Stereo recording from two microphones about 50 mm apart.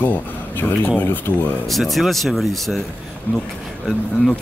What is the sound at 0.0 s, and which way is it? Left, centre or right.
Speech, left.